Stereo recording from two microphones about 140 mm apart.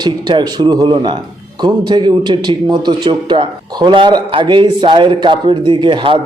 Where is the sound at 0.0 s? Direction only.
30° right (ahead or behind).